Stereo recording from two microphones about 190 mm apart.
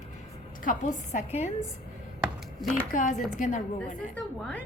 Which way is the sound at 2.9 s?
45° left (ahead or behind).